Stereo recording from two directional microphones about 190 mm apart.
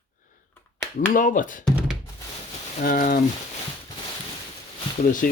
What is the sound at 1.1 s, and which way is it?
Speech, 45° left (ahead or behind).